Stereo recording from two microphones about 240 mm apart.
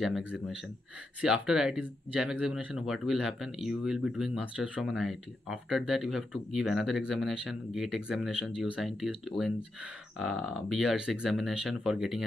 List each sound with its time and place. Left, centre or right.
0.0 s speech: centre